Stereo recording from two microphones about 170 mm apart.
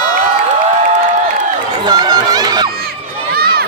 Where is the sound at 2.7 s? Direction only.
65° right (ahead or behind).